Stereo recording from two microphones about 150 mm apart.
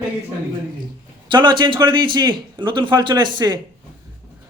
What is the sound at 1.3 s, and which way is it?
A man's voice, 30° right (ahead or behind).